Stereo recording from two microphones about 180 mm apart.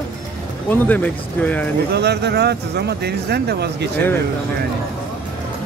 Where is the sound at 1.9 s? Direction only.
65° right (ahead or behind).